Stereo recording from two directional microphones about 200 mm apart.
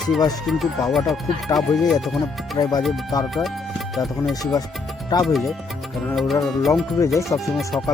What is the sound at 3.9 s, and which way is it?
Speech, centre (ahead or behind).